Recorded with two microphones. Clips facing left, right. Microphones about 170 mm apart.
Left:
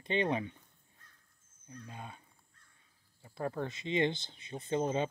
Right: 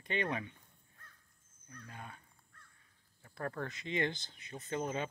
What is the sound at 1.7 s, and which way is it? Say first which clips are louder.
Speech: left 3 dB; 20° left (ahead or behind).